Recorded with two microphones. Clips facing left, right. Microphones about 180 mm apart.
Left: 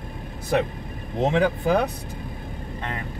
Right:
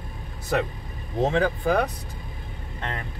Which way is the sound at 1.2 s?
20° left (ahead or behind).